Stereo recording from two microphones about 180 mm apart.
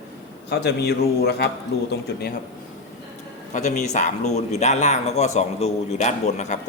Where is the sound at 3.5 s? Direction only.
40° left (ahead or behind).